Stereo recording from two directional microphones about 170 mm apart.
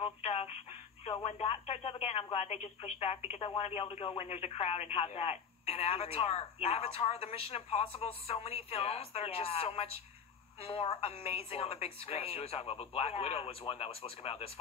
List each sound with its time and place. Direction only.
0.0 s telephone: 35° left (ahead or behind)
1.2 s speech: 35° left (ahead or behind)